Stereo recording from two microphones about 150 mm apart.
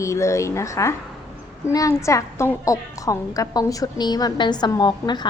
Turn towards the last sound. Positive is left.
turn(degrees=30)  # may be behind; listen again after turning